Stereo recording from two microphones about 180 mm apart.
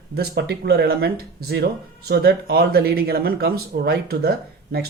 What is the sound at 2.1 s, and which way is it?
Speech, 60° right (ahead or behind).